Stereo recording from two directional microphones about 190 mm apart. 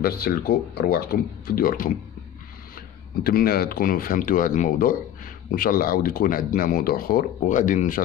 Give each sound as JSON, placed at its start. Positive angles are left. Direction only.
{"t": 0.0, "sound": "speech", "side_deg": 55}
{"t": 3.3, "sound": "speech", "side_deg": 55}